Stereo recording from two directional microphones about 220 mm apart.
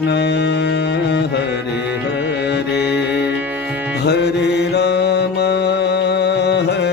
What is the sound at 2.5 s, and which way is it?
Music, 50° left (ahead or behind).